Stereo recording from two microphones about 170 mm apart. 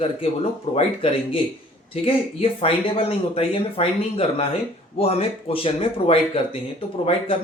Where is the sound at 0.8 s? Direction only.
35° left (ahead or behind).